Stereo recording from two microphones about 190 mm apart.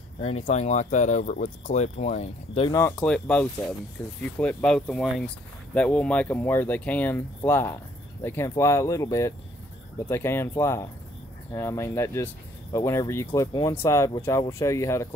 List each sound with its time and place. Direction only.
0.5 s speech: 35° left (ahead or behind)
3.0 s speech: 5° left (ahead or behind)